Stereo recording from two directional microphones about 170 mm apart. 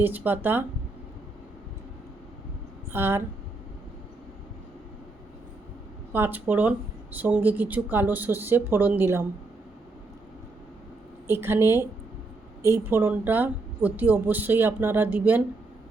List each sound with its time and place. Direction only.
0.0 s speech: 10° right (ahead or behind)
2.9 s speech: 15° right (ahead or behind)
6.1 s speech: 10° right (ahead or behind)
11.3 s speech: 15° right (ahead or behind)